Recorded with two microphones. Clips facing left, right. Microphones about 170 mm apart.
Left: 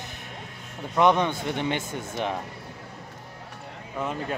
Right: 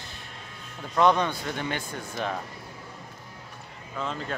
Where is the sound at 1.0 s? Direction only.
20° left (ahead or behind).